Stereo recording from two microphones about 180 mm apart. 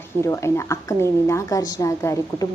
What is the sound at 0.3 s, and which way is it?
A woman's voice, 15° left (ahead or behind).